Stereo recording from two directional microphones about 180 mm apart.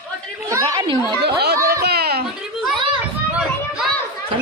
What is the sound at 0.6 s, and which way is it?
Speech, 25° right (ahead or behind).